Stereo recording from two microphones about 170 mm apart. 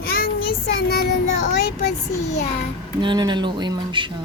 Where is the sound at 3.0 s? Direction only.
25° right (ahead or behind).